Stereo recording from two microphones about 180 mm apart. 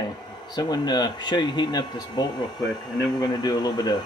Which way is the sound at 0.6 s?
20° left (ahead or behind).